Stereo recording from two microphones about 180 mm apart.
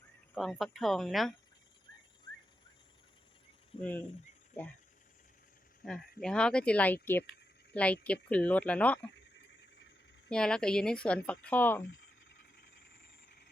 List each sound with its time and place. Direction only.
0.3 s speech: centre (ahead or behind)
3.8 s speech: 10° left (ahead or behind)
5.8 s speech: centre (ahead or behind)
9.4 s a sound: 75° left (ahead or behind)
10.2 s speech: 5° left (ahead or behind)